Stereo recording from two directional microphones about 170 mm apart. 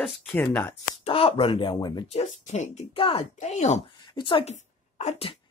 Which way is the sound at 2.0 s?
40° left (ahead or behind).